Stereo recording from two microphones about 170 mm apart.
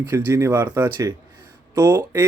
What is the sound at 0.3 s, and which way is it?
Speech, 15° right (ahead or behind).